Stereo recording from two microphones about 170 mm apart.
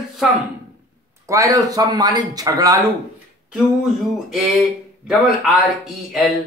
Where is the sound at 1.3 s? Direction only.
20° right (ahead or behind).